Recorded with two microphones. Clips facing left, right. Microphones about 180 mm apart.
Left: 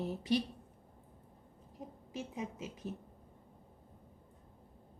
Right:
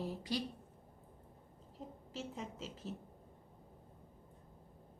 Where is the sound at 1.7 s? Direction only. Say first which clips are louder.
Left 3 dB; 15° left (ahead or behind).